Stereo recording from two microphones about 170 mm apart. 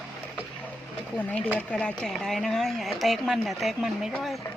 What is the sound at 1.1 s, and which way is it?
Speech, 10° left (ahead or behind).